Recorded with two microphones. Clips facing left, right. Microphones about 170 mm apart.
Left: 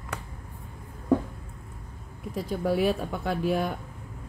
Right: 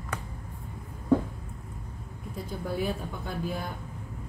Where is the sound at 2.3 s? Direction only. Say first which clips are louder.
Left 7 dB; 85° left.